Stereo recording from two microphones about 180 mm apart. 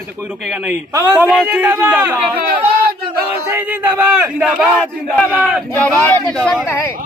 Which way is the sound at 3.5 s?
10° right (ahead or behind).